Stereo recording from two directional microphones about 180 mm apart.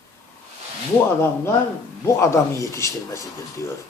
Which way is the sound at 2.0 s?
15° left (ahead or behind).